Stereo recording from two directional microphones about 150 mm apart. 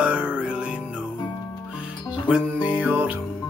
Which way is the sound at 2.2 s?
10° right (ahead or behind).